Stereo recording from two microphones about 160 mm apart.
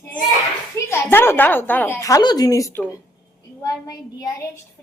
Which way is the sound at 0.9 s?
15° left (ahead or behind).